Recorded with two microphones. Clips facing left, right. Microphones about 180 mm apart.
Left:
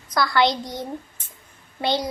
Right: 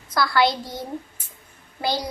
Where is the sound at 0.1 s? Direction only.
5° right (ahead or behind).